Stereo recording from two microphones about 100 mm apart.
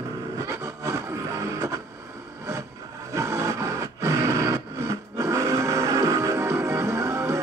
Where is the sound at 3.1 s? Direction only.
30° right (ahead or behind).